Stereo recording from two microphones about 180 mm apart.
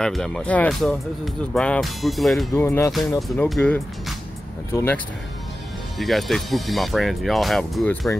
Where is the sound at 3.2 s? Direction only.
Centre (ahead or behind).